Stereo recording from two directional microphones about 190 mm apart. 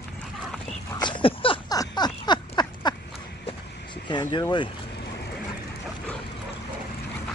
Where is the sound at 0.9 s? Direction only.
25° left (ahead or behind).